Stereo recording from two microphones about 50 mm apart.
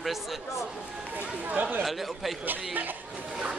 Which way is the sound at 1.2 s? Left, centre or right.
Right.